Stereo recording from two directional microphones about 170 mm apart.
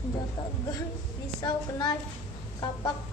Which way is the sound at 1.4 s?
25° left (ahead or behind).